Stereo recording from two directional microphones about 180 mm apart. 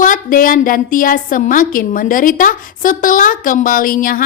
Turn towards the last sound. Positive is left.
turn(degrees=50)  # may be behind; listen again after turning